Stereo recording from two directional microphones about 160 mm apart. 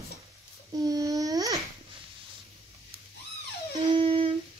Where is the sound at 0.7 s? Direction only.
20° right (ahead or behind).